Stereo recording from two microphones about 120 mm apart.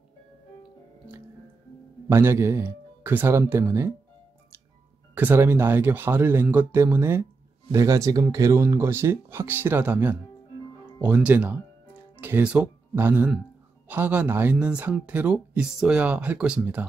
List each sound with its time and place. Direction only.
2.0 s speech: 20° right (ahead or behind)
5.1 s speech: 15° right (ahead or behind)